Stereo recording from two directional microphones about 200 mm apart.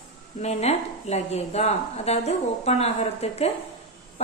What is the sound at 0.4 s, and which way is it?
A woman's voice, 30° left (ahead or behind).